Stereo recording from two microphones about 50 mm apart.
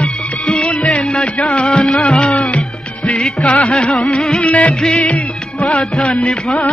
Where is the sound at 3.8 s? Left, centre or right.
Left.